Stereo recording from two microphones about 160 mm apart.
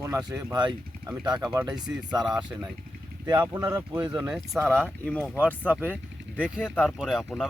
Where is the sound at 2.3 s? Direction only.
5° right (ahead or behind).